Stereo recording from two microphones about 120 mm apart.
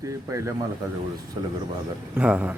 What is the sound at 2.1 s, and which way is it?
Speech, 10° right (ahead or behind).